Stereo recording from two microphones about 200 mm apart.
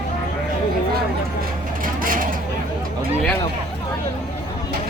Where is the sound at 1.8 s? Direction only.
45° right (ahead or behind).